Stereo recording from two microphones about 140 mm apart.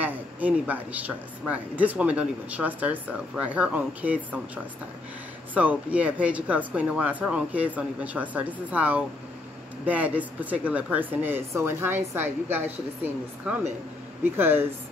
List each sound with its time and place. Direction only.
0.0 s speech: 10° right (ahead or behind)
5.5 s speech: 10° right (ahead or behind)